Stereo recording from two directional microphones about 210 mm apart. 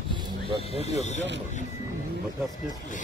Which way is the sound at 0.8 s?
30° left (ahead or behind).